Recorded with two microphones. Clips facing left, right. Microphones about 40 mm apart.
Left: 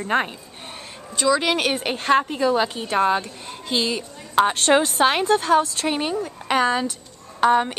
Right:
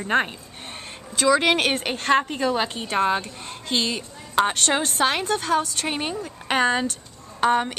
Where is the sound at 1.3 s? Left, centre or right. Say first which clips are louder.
Right 1 dB; right.